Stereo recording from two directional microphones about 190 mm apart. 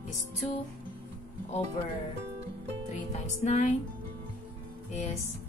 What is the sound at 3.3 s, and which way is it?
Speech, 35° left (ahead or behind).